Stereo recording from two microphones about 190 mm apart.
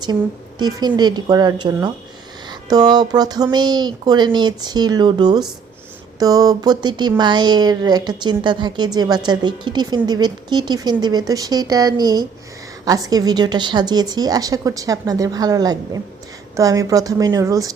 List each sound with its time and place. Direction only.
0.6 s a woman's voice: 20° right (ahead or behind)